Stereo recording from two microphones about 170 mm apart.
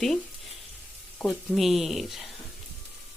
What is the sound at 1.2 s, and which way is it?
Speech, centre (ahead or behind).